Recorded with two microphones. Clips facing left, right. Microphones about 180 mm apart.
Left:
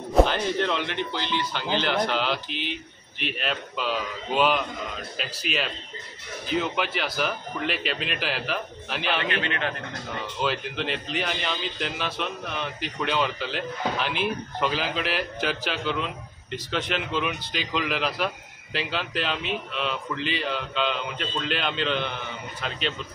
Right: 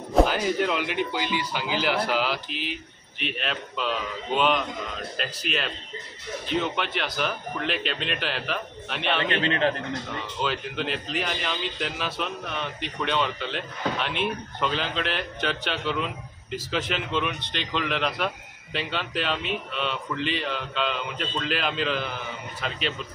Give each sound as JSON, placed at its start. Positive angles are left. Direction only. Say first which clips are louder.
{"t": 0.1, "sound": "speech", "louder": "even", "side_deg": -5}
{"t": 9.3, "sound": "a man's voice", "louder": "right 4 dB", "side_deg": -30}
{"t": 10.4, "sound": "speech", "louder": "left 1 dB", "side_deg": 0}